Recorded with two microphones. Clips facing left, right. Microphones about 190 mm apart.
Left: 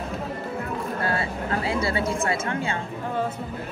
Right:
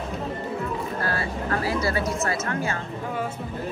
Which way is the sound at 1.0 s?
25° left (ahead or behind).